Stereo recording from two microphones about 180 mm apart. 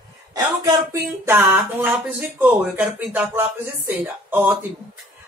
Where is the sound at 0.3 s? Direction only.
20° right (ahead or behind).